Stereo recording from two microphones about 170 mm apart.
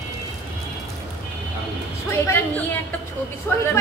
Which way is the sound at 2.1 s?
15° left (ahead or behind).